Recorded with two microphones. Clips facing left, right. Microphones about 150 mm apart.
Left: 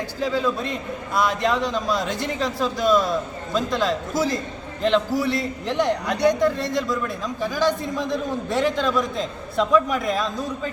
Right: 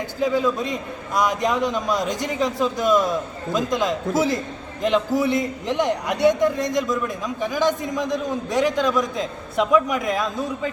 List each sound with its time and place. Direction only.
0.2 s a man's voice: 15° right (ahead or behind)